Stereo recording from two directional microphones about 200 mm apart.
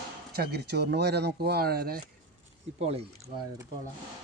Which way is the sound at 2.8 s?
30° right (ahead or behind).